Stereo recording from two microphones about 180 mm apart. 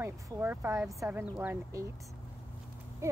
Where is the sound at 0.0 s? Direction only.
10° right (ahead or behind).